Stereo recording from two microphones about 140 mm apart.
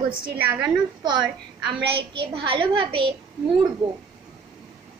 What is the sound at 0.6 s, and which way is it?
A woman's voice, 30° right (ahead or behind).